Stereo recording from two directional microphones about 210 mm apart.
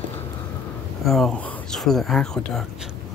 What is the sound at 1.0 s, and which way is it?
Speech, centre (ahead or behind).